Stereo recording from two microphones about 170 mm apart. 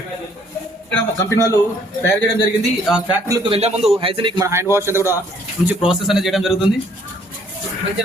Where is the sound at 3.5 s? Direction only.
35° right (ahead or behind).